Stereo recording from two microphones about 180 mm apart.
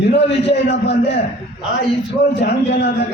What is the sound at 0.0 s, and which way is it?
A man's voice, 70° left (ahead or behind).